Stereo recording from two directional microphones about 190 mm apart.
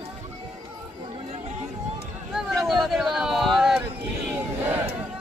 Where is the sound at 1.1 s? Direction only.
35° right (ahead or behind).